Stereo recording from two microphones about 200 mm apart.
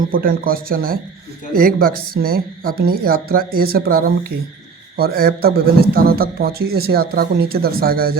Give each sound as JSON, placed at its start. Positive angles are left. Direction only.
{"t": 0.0, "sound": "a man's voice", "side_deg": -45}